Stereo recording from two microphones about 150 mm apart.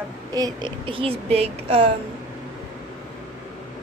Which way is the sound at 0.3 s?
30° right (ahead or behind).